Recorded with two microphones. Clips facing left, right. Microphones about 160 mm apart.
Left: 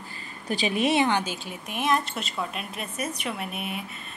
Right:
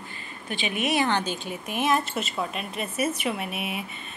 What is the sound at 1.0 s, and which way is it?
Speech, 10° left (ahead or behind).